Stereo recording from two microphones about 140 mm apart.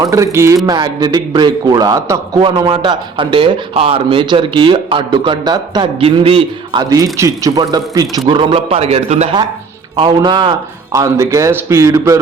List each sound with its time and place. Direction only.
0.0 s a man's voice: 20° right (ahead or behind); by 6.8 s 40° right (ahead or behind)
6.9 s speech: 25° right (ahead or behind)
8.3 s a man's voice: 40° right (ahead or behind)
9.9 s a man's voice: 35° right (ahead or behind)
10.9 s speech: 20° right (ahead or behind)